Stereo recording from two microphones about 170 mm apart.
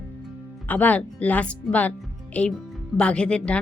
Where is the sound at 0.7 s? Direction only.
10° left (ahead or behind).